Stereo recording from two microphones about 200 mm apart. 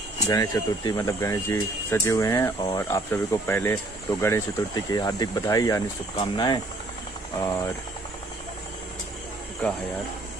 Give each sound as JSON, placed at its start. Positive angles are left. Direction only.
{"t": 0.3, "sound": "speech", "side_deg": 20}